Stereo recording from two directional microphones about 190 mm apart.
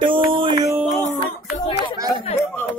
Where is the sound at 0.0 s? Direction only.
25° right (ahead or behind).